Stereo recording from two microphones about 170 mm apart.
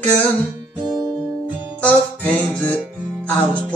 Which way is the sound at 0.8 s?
20° right (ahead or behind).